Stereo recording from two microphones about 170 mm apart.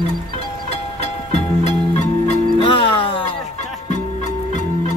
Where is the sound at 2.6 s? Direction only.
30° left (ahead or behind).